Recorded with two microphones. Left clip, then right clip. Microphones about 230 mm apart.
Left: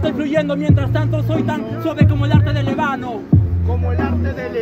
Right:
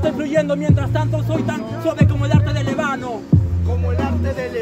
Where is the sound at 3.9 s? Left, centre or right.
Right.